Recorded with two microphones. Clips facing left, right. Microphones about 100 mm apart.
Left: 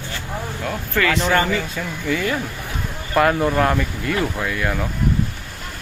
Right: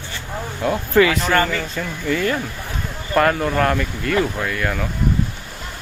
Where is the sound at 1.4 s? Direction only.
15° left (ahead or behind).